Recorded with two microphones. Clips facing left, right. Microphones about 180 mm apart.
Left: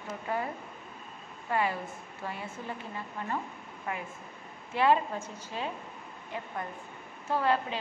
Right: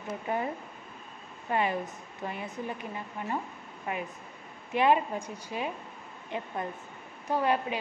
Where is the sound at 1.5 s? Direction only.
20° right (ahead or behind).